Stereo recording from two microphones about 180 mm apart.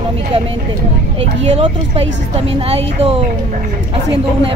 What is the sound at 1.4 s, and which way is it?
A woman's voice, 35° right (ahead or behind).